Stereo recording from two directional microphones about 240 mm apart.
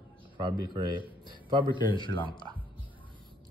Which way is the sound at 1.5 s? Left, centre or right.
Centre.